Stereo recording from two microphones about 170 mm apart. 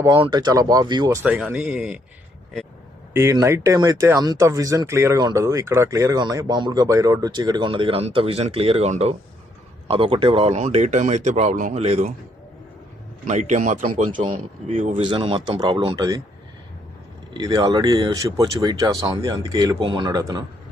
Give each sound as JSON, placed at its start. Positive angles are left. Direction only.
{"t": 0.0, "sound": "speech", "side_deg": -25}
{"t": 1.2, "sound": "speech", "side_deg": -5}
{"t": 3.1, "sound": "speech", "side_deg": -15}
{"t": 13.2, "sound": "speech", "side_deg": -45}
{"t": 15.0, "sound": "speech", "side_deg": -30}
{"t": 17.3, "sound": "speech", "side_deg": -25}